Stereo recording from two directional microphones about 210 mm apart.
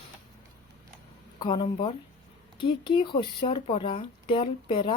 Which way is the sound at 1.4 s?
20° left (ahead or behind).